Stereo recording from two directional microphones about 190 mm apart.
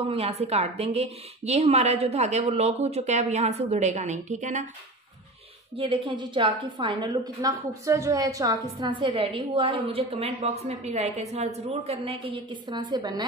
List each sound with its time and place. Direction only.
0.0 s a woman's voice: 30° right (ahead or behind)
5.8 s a woman's voice: 25° right (ahead or behind)